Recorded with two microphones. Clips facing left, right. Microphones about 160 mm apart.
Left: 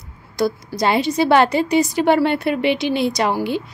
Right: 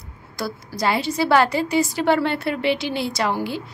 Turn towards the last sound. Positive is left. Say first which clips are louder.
# left 4 dB
turn(degrees=20)  # may be behind; listen again after turning